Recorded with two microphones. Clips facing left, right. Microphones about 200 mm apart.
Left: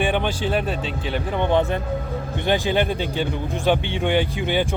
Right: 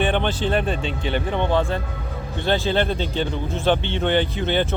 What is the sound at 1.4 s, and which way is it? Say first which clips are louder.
Speech: left 4 dB; 20° left (ahead or behind).